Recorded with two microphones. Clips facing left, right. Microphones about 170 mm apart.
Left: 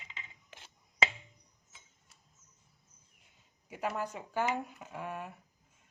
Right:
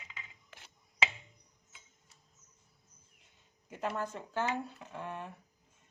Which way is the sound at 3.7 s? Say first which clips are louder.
Even; 10° left (ahead or behind).